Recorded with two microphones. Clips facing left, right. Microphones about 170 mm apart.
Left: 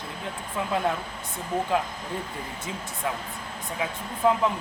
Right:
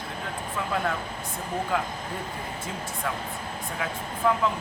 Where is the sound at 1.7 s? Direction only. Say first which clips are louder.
Left 2 dB; 20° left (ahead or behind).